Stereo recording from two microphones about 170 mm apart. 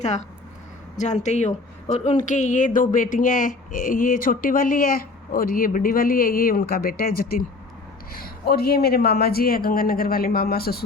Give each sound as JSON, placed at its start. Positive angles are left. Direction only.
{"t": 0.0, "sound": "speech", "side_deg": 45}